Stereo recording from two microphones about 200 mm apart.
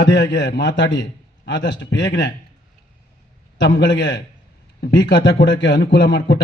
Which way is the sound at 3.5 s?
60° left (ahead or behind).